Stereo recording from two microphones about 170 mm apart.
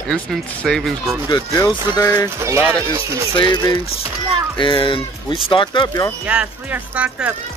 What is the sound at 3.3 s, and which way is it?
Speech, 25° left (ahead or behind).